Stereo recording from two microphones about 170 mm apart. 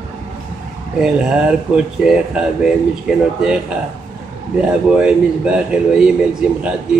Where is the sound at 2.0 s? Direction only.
5° right (ahead or behind).